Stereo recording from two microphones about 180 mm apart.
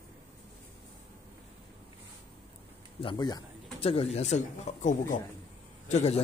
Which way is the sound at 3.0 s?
25° left (ahead or behind).